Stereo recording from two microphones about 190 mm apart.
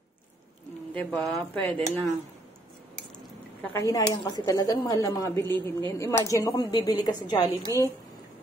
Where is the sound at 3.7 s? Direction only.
15° left (ahead or behind).